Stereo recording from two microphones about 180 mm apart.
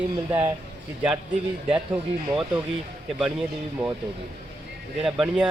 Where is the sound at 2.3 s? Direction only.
5° right (ahead or behind).